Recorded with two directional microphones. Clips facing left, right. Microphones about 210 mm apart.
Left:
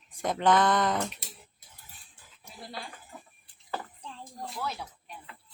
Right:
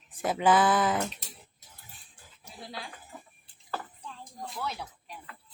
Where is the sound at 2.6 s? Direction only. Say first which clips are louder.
Even; centre (ahead or behind).